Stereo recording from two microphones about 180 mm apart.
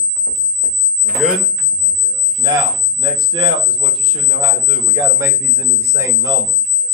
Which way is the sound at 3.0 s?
25° right (ahead or behind).